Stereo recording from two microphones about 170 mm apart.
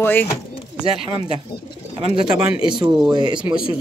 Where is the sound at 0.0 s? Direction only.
10° left (ahead or behind).